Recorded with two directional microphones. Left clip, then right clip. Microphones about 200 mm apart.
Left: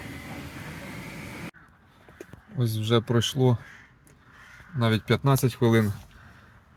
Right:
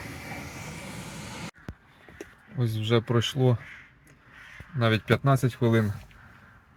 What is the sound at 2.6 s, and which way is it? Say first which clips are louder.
Speech: left 1 dB; 10° left (ahead or behind).